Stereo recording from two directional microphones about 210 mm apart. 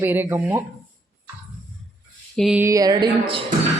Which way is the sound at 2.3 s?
Centre (ahead or behind).